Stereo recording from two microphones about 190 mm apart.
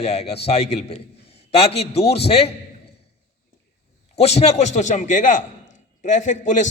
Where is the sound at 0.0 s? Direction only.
35° left (ahead or behind).